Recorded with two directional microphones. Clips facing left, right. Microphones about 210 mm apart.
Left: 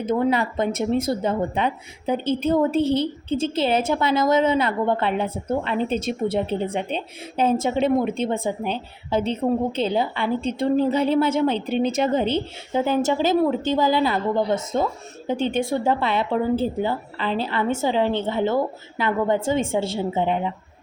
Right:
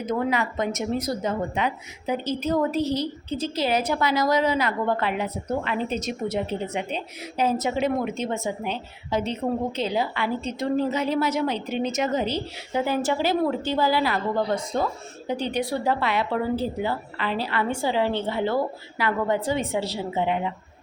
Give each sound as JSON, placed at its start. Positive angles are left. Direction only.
{"t": 0.0, "sound": "speech", "side_deg": 30}